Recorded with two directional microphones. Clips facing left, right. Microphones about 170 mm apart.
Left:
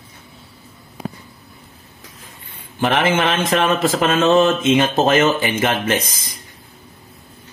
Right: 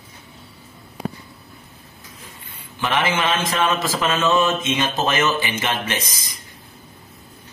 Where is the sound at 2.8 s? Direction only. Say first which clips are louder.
Left 4 dB; 50° left (ahead or behind).